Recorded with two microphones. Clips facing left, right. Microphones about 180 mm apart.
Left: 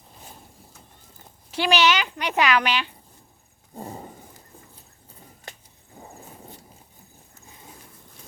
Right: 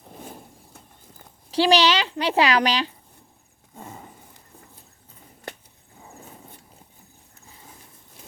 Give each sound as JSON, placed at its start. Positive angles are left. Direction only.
{"t": 1.5, "sound": "speech", "side_deg": -30}
{"t": 3.8, "sound": "dog", "side_deg": 35}
{"t": 6.0, "sound": "a sound", "side_deg": 35}